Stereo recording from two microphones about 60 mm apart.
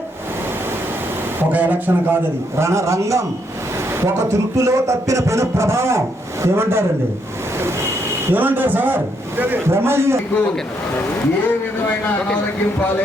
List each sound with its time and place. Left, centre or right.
1.4 s speech: right
2.6 s a man's voice: right
8.3 s speech: right
9.6 s a man's voice: right